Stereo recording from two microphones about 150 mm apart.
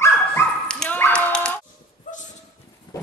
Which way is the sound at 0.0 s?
15° left (ahead or behind).